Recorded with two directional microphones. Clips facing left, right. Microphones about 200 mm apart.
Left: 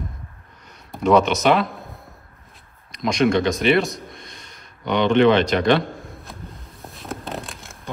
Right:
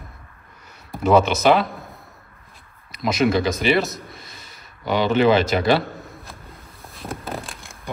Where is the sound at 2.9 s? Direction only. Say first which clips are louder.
Left 1 dB; 5° right (ahead or behind).